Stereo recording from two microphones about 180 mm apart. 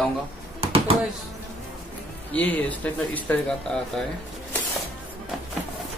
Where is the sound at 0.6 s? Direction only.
30° right (ahead or behind).